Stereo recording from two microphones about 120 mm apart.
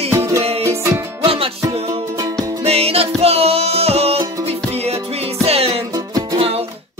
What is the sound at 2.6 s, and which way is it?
Music, 55° right (ahead or behind).